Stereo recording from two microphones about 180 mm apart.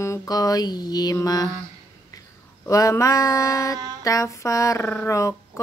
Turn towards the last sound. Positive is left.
turn(degrees=15)  # may be behind; listen again after turning